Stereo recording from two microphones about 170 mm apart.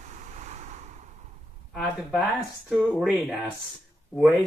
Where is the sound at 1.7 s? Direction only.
Centre (ahead or behind).